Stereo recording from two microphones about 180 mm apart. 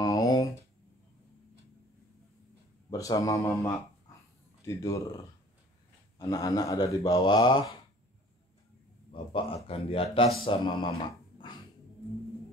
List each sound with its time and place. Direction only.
0.0 s a sound: 20° left (ahead or behind)
2.9 s speech: 20° left (ahead or behind)
9.1 s speech: 30° left (ahead or behind)